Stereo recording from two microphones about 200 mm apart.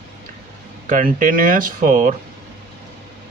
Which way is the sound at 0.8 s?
40° right (ahead or behind).